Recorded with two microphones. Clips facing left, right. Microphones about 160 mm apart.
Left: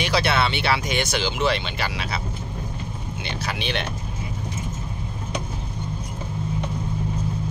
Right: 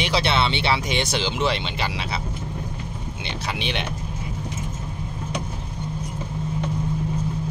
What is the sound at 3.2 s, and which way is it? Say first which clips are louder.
Speech: even; 20° right (ahead or behind).